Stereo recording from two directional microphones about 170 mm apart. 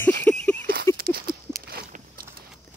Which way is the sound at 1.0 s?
60° right (ahead or behind).